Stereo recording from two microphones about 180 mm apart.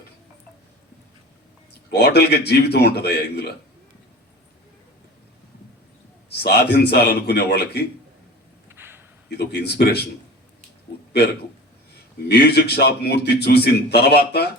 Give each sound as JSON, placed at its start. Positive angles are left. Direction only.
{"t": 1.9, "sound": "a man's voice", "side_deg": 70}
{"t": 6.3, "sound": "a man's voice", "side_deg": 65}
{"t": 8.7, "sound": "a sound", "side_deg": -10}
{"t": 9.4, "sound": "a man's voice", "side_deg": 65}
{"t": 12.3, "sound": "a man's voice", "side_deg": 65}